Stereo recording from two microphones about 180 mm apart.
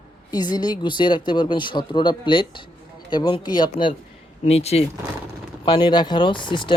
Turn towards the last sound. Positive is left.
turn(degrees=25)  # may be behind; listen again after turning